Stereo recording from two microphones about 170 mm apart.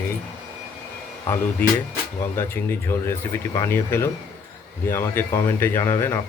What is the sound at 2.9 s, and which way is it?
Speech, 15° left (ahead or behind).